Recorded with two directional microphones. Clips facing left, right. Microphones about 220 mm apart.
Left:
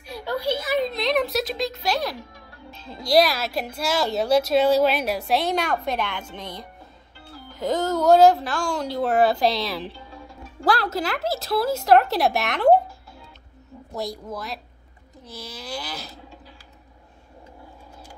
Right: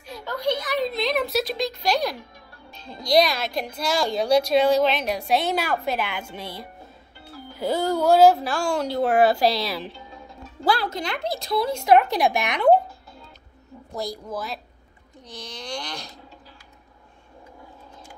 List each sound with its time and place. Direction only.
0.1 s speech: 10° left (ahead or behind)
13.9 s speech: centre (ahead or behind)